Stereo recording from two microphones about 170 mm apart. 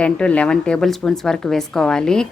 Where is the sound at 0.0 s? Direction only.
5° left (ahead or behind).